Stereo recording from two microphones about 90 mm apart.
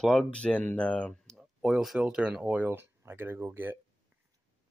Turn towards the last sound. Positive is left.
turn(degrees=-25)  # may be behind; listen again after turning